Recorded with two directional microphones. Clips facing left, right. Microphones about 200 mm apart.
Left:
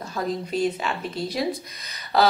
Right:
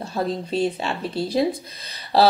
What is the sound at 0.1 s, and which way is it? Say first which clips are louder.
A woman's voice: right 2 dB; 30° right (ahead or behind).